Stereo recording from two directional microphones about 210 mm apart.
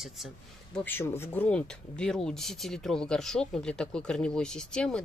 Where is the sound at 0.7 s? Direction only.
10° left (ahead or behind).